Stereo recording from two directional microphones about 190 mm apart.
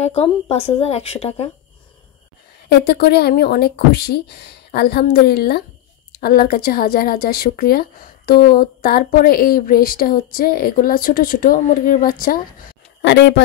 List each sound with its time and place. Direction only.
0.0 s a woman's voice: 30° left (ahead or behind)
2.7 s a woman's voice: 55° left (ahead or behind)
13.0 s speech: 65° left (ahead or behind)